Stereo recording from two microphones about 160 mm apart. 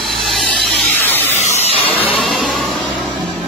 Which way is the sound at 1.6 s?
40° left (ahead or behind).